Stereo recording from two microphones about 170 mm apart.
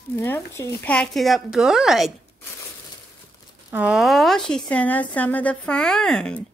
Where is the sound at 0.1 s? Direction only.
15° left (ahead or behind); by 2.1 s centre (ahead or behind).